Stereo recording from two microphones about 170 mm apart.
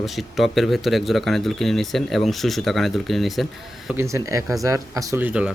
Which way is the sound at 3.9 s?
15° right (ahead or behind).